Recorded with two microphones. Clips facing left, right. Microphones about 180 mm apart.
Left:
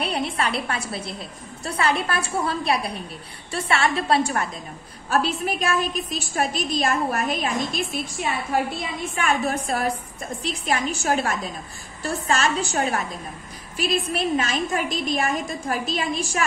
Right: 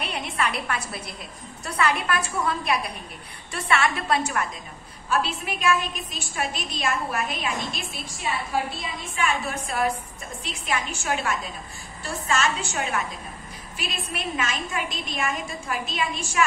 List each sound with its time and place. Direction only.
0.0 s a woman's voice: 35° left (ahead or behind)
9.1 s a woman's voice: 45° left (ahead or behind)